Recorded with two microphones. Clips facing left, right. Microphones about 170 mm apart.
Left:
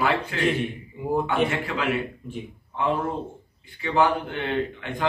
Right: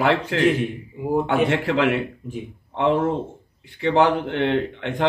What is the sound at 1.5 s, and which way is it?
Speech, 80° right.